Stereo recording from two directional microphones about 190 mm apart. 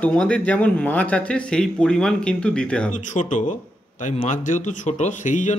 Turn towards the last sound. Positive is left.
turn(degrees=40)  # may be behind; listen again after turning